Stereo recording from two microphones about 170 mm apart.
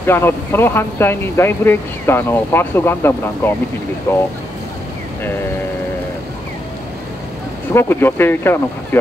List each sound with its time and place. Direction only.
0.0 s speech: 15° left (ahead or behind)
7.7 s speech: 15° left (ahead or behind)